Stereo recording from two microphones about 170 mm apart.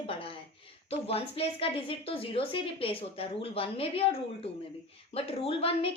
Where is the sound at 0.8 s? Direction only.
35° left (ahead or behind).